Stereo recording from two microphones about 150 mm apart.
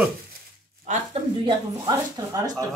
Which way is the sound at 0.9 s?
55° right (ahead or behind).